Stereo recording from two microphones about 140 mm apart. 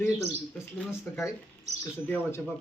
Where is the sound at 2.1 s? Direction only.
15° left (ahead or behind).